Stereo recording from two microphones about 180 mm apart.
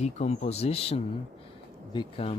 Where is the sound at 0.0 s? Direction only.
40° left (ahead or behind).